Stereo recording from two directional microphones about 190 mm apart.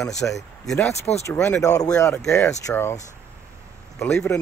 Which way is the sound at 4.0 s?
10° left (ahead or behind).